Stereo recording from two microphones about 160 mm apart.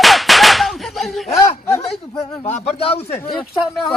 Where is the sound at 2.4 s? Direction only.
40° left (ahead or behind).